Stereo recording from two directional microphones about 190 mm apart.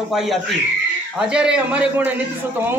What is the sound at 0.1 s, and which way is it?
A man's voice, centre (ahead or behind).